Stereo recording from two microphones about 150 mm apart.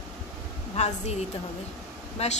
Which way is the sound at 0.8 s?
50° left (ahead or behind).